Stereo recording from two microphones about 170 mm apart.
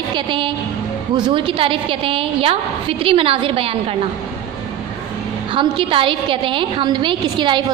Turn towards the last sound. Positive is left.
turn(degrees=-30)  # may be behind; listen again after turning